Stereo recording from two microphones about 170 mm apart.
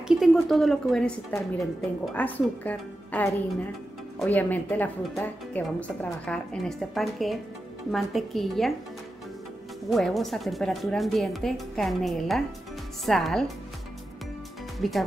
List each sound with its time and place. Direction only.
0.2 s a woman's voice: centre (ahead or behind)
9.8 s speech: centre (ahead or behind)
14.8 s speech: centre (ahead or behind)